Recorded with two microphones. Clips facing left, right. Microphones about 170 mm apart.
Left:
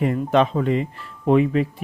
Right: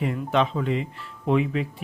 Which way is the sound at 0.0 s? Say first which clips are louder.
Left 5 dB; 45° left (ahead or behind).